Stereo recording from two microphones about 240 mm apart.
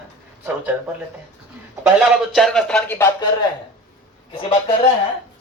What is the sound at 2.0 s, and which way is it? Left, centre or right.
Speech, centre.